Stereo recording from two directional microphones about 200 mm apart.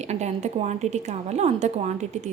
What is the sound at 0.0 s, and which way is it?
A woman's voice, 35° right (ahead or behind).